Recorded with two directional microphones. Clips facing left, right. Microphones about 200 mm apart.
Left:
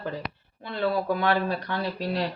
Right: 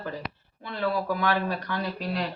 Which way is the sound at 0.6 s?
30° left (ahead or behind).